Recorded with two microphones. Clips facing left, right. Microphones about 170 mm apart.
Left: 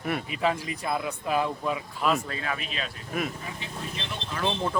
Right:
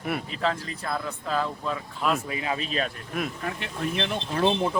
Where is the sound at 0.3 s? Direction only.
10° left (ahead or behind).